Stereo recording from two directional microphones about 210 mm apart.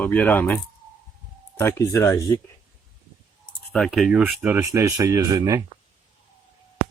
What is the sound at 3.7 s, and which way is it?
Speech, centre (ahead or behind).